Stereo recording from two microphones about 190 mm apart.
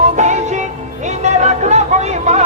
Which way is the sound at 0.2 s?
40° right (ahead or behind).